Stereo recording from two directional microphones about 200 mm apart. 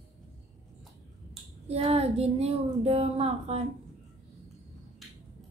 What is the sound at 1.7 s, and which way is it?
Speech, 30° right (ahead or behind).